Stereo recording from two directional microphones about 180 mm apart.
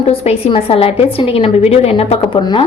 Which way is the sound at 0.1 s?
30° left (ahead or behind).